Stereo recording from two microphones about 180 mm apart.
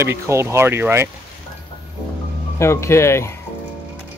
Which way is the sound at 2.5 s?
15° left (ahead or behind).